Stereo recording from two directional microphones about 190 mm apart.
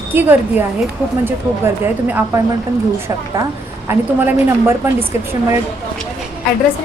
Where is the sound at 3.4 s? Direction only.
15° right (ahead or behind).